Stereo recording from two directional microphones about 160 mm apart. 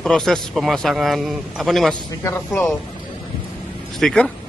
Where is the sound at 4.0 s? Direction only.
5° left (ahead or behind).